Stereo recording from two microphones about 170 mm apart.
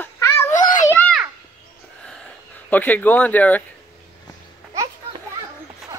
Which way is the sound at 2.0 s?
10° left (ahead or behind).